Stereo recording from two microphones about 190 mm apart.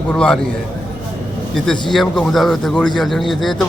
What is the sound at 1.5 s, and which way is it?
A man's voice, 5° left (ahead or behind).